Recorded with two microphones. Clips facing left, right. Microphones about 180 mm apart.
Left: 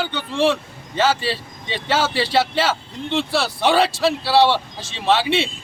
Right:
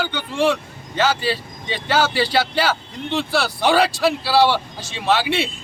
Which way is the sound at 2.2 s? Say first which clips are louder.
Even; centre (ahead or behind).